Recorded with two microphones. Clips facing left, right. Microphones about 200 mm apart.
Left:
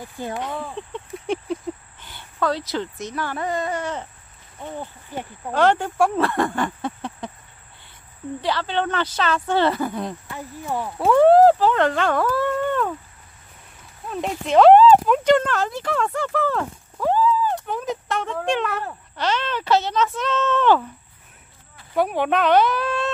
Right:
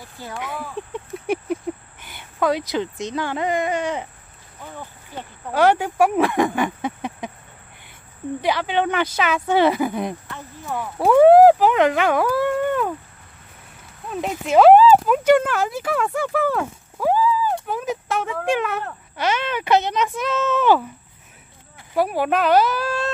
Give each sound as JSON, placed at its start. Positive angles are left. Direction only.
{"t": 0.0, "sound": "speech", "side_deg": 20}
{"t": 0.7, "sound": "speech", "side_deg": -10}
{"t": 5.5, "sound": "speech", "side_deg": -10}
{"t": 8.4, "sound": "speech", "side_deg": -15}
{"t": 10.3, "sound": "speech", "side_deg": 15}
{"t": 11.0, "sound": "speech", "side_deg": -10}
{"t": 14.1, "sound": "speech", "side_deg": -5}
{"t": 21.9, "sound": "speech", "side_deg": -5}